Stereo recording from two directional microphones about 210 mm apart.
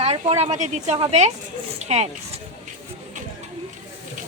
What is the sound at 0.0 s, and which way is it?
Speech, 30° right (ahead or behind).